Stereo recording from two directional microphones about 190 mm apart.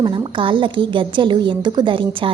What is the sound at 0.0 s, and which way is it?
A woman's voice, 25° right (ahead or behind).